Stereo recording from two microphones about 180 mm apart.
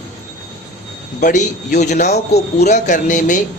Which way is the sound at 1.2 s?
45° left (ahead or behind).